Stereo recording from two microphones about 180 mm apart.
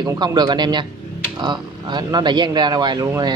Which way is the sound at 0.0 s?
25° right (ahead or behind).